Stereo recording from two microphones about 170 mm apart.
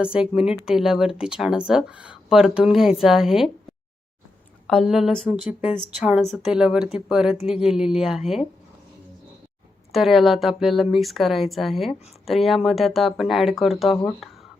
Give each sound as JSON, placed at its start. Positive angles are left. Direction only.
{"t": 0.0, "sound": "a woman's voice", "side_deg": -5}
{"t": 4.6, "sound": "a woman's voice", "side_deg": 0}
{"t": 9.9, "sound": "a woman's voice", "side_deg": 0}